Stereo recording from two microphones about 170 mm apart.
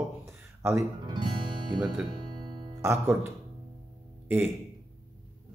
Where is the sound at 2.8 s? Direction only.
15° right (ahead or behind).